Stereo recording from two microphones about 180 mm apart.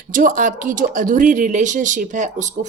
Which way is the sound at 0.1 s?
45° right (ahead or behind).